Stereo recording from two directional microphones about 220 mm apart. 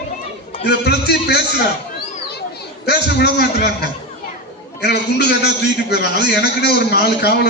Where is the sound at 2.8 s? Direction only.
50° left (ahead or behind).